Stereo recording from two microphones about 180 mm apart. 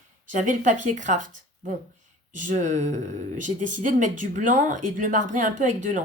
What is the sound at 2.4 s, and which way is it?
Speech, 45° right (ahead or behind).